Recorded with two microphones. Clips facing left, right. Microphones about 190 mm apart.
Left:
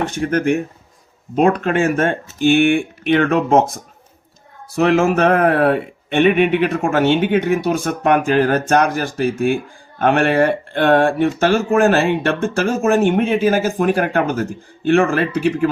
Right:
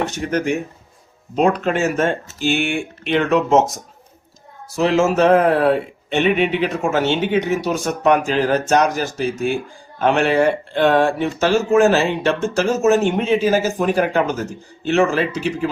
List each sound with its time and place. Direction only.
0.0 s speech: 50° left (ahead or behind)